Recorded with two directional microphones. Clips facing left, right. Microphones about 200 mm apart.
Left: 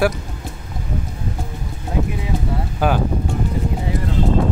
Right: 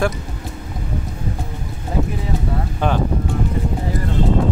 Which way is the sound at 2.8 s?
5° left (ahead or behind).